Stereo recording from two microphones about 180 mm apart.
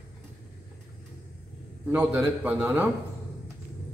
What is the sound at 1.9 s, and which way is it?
Speech, 5° right (ahead or behind).